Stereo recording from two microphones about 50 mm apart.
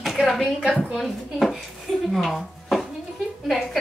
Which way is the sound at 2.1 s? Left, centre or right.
Centre.